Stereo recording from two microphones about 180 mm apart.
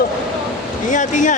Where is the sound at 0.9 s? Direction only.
45° left (ahead or behind).